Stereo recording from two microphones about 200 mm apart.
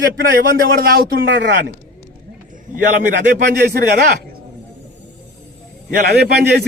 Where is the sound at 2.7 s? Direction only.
40° right (ahead or behind).